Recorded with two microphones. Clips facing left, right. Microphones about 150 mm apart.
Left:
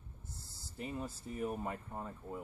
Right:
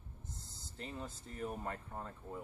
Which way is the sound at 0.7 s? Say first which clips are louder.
Left 4 dB; 10° left (ahead or behind).